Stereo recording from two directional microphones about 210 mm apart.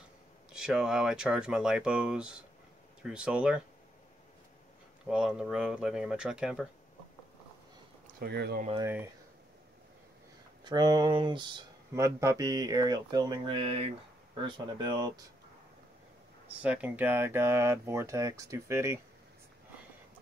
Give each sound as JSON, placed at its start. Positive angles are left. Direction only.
{"t": 0.5, "sound": "speech", "side_deg": -5}
{"t": 5.0, "sound": "speech", "side_deg": -5}
{"t": 8.2, "sound": "speech", "side_deg": -50}
{"t": 8.8, "sound": "speech", "side_deg": -10}
{"t": 10.6, "sound": "speech", "side_deg": -20}
{"t": 16.6, "sound": "speech", "side_deg": -5}